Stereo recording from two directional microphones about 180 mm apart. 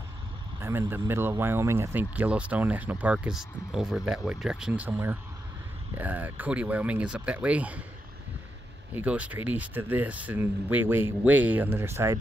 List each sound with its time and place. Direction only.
0.6 s speech: 15° right (ahead or behind)
8.9 s speech: 5° right (ahead or behind)